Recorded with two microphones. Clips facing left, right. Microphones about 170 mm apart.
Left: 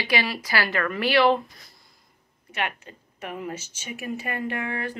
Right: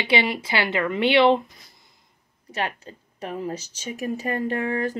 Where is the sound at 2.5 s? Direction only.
35° right (ahead or behind).